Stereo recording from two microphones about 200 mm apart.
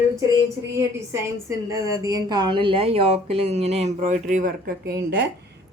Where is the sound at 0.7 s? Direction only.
15° right (ahead or behind).